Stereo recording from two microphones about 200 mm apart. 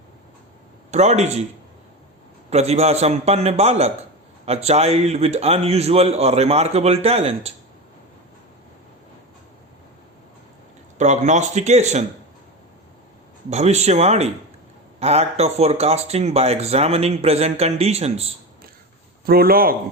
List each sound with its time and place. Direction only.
0.9 s speech: 35° right (ahead or behind)
2.5 s speech: 30° right (ahead or behind)
10.9 s speech: 35° right (ahead or behind)
13.5 s speech: 35° right (ahead or behind)
19.2 s a man's voice: 50° right (ahead or behind)